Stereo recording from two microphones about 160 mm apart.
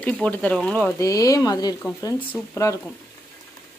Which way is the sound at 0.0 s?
10° left (ahead or behind).